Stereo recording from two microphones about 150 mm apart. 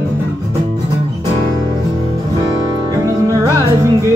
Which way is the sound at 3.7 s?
20° right (ahead or behind).